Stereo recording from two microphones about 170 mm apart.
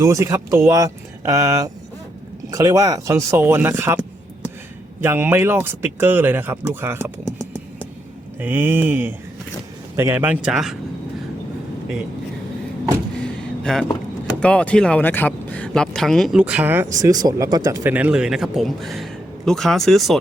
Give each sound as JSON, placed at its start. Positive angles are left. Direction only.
{"t": 0.0, "sound": "speech", "side_deg": -20}
{"t": 5.0, "sound": "speech", "side_deg": -10}
{"t": 8.4, "sound": "speech", "side_deg": -10}
{"t": 13.1, "sound": "a sound", "side_deg": 5}
{"t": 14.4, "sound": "speech", "side_deg": 5}
{"t": 16.9, "sound": "speech", "side_deg": -20}